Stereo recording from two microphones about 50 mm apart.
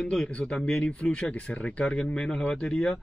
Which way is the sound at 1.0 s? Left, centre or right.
Left.